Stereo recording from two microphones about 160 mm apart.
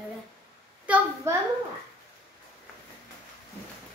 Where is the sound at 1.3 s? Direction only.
15° right (ahead or behind).